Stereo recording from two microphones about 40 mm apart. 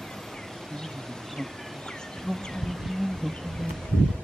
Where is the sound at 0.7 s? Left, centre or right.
Centre.